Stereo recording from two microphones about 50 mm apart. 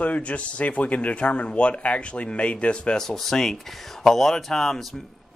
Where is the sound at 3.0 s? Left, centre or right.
Centre.